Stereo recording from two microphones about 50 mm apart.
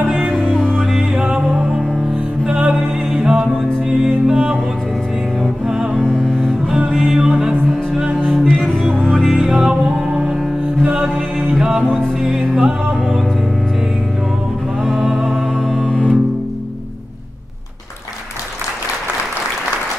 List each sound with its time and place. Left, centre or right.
0.3 s music: centre
1.1 s music: centre
5.9 s music: centre
6.9 s music: centre
9.5 s music: centre
11.8 s music: centre
12.2 s music: centre
15.0 s music: centre
15.2 s music: centre